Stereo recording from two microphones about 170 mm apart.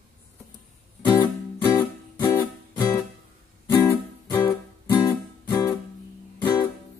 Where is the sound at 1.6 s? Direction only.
25° left (ahead or behind).